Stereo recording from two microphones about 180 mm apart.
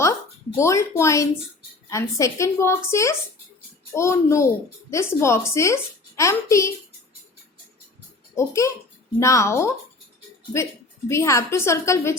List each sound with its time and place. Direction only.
0.5 s a woman's voice: 15° left (ahead or behind)
8.4 s a woman's voice: 15° left (ahead or behind)
11.1 s a woman's voice: 15° left (ahead or behind)